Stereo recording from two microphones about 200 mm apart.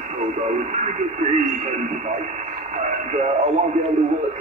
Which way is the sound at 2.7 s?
35° right (ahead or behind).